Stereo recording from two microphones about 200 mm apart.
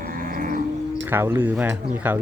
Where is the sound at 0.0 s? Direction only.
45° right (ahead or behind).